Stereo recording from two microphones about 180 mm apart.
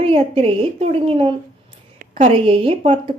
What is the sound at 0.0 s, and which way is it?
A woman's voice, 30° right (ahead or behind).